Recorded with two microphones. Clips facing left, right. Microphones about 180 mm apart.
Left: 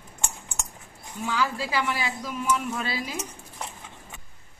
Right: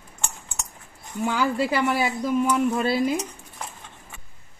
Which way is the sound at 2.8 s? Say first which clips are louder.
Right 10 dB; 55° right (ahead or behind).